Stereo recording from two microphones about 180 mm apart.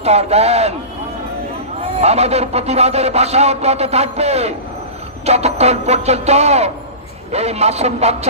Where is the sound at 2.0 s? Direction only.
35° right (ahead or behind).